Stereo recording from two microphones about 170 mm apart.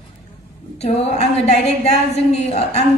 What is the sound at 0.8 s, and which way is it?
A woman's voice, 40° left (ahead or behind).